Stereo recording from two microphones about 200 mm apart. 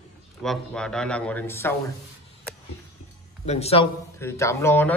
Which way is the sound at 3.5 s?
30° left (ahead or behind).